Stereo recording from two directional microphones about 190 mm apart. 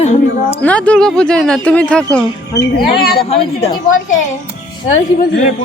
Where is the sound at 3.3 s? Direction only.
35° left (ahead or behind).